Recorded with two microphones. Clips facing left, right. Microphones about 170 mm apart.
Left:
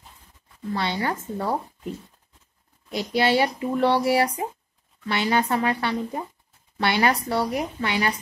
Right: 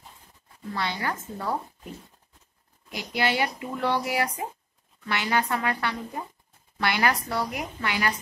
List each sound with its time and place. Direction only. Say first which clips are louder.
0.7 s speech: left 4 dB; 25° left (ahead or behind)
2.9 s speech: left 6 dB; 30° left (ahead or behind)